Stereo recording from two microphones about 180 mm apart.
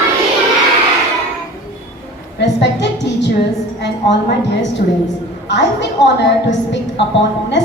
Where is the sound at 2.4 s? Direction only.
75° left (ahead or behind).